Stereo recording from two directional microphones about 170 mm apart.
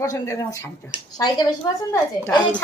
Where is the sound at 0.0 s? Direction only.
20° left (ahead or behind).